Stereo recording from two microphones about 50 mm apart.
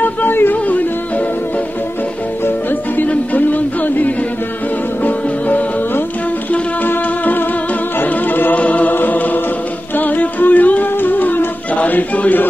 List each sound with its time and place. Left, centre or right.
0.0 s music: left
2.4 s music: left